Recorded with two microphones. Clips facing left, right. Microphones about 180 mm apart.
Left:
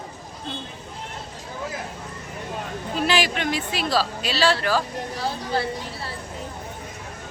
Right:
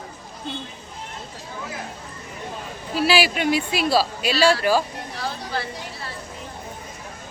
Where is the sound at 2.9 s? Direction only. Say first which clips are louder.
Right 3 dB; 10° right (ahead or behind).